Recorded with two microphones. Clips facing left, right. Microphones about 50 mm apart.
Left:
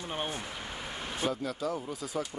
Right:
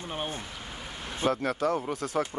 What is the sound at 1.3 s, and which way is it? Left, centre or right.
Speech, right.